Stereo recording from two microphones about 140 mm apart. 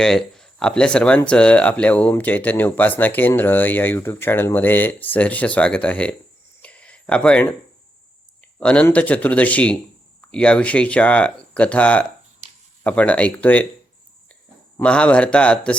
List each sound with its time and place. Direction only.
0.0 s speech: 5° left (ahead or behind)
6.6 s a sound: 10° left (ahead or behind)
8.5 s speech: 10° left (ahead or behind)
12.4 s a sound: 50° right (ahead or behind)
12.8 s speech: 10° left (ahead or behind)
14.8 s speech: 10° left (ahead or behind)